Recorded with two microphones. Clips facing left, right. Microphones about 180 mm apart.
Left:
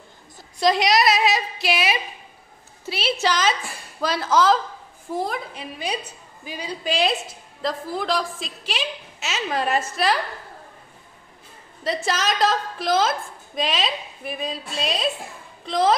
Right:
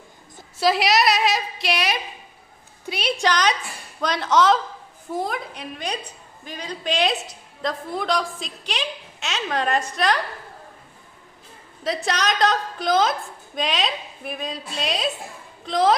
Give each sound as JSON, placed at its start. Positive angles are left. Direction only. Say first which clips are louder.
{"t": 0.6, "sound": "a woman's voice", "louder": "left 1 dB", "side_deg": -5}
{"t": 11.8, "sound": "a woman's voice", "louder": "even", "side_deg": 0}